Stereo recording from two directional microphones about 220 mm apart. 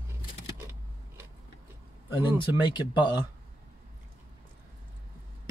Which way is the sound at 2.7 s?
20° left (ahead or behind).